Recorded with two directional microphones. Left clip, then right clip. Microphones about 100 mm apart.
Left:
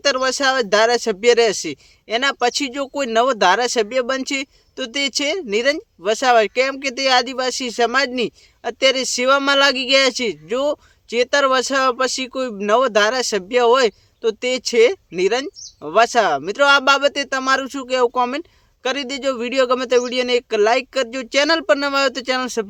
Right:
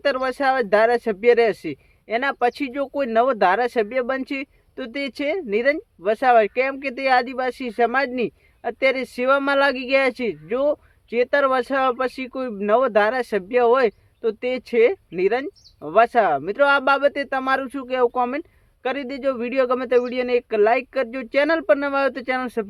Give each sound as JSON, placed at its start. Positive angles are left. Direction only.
{"t": 0.0, "sound": "speech", "side_deg": 20}